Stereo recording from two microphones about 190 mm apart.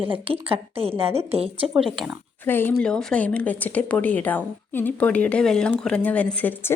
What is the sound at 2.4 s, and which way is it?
Speech, 10° left (ahead or behind).